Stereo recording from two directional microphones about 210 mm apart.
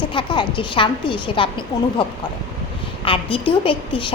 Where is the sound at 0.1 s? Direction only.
25° left (ahead or behind).